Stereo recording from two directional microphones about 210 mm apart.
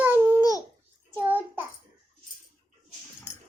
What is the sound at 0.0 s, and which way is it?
Babbling, 10° right (ahead or behind).